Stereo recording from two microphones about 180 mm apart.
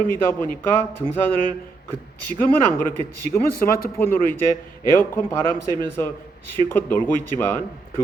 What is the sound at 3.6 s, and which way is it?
A man's voice, 10° left (ahead or behind).